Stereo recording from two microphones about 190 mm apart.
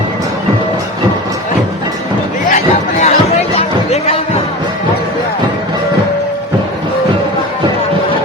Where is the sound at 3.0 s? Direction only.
35° left (ahead or behind).